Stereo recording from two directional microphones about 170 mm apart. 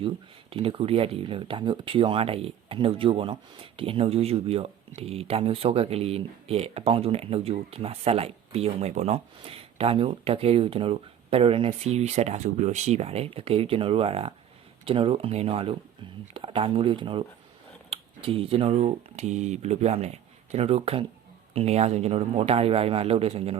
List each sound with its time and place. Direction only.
0.5 s speech: 30° right (ahead or behind)